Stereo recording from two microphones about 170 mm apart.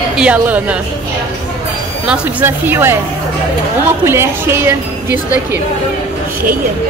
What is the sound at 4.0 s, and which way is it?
A woman's voice, 15° right (ahead or behind).